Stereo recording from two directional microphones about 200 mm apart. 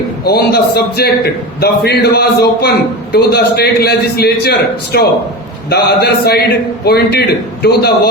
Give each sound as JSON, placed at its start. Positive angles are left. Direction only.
{"t": 0.3, "sound": "a man's voice", "side_deg": 50}